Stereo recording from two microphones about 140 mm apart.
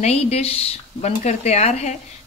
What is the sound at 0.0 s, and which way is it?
A woman's voice, 50° left (ahead or behind).